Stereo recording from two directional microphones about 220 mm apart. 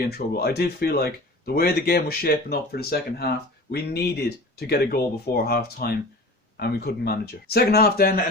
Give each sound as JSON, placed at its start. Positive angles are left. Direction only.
{"t": 0.1, "sound": "speech", "side_deg": 45}